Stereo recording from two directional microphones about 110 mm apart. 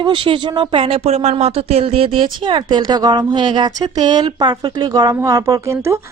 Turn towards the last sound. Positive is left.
turn(degrees=-30)  # may be behind; listen again after turning